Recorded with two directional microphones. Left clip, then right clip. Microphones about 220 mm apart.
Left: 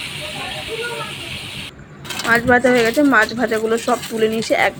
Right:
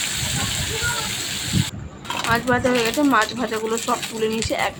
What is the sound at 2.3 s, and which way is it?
Speech, 15° left (ahead or behind).